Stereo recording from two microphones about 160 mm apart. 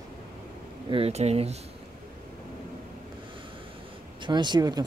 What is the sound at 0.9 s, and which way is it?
Speech, 40° right (ahead or behind).